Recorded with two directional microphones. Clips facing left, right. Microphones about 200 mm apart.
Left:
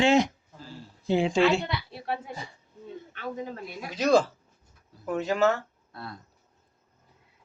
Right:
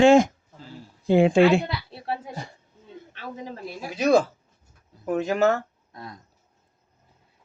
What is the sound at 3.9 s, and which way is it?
Speech, 10° right (ahead or behind).